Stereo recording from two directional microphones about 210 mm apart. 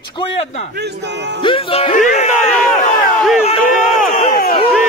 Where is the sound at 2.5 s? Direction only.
5° left (ahead or behind).